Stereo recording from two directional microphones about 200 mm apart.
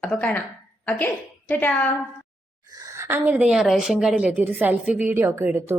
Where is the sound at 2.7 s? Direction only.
15° right (ahead or behind).